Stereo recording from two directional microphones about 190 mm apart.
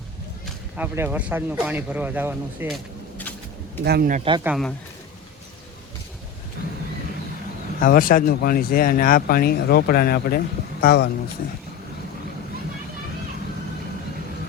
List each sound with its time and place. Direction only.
0.8 s speech: 10° right (ahead or behind)
2.7 s vehicle: 10° left (ahead or behind)
3.8 s speech: 55° right (ahead or behind)
4.1 s a man's voice: 30° right (ahead or behind)
4.4 s speech: centre (ahead or behind)
7.8 s speech: 50° left (ahead or behind)